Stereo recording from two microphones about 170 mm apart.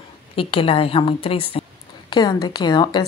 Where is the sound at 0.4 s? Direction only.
30° left (ahead or behind).